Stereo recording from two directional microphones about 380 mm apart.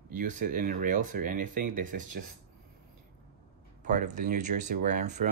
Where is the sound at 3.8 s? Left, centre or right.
Right.